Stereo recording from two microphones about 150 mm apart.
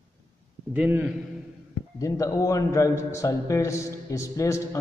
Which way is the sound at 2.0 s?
20° left (ahead or behind).